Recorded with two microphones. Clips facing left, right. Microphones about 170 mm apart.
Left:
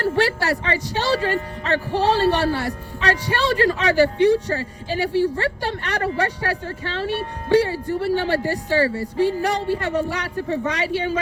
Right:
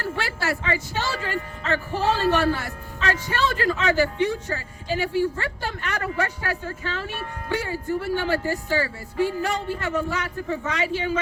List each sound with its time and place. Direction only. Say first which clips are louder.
0.0 s a woman's voice: left 7 dB; 40° left (ahead or behind)